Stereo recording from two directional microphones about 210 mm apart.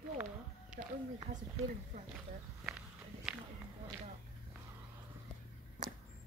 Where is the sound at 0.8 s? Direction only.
45° right (ahead or behind).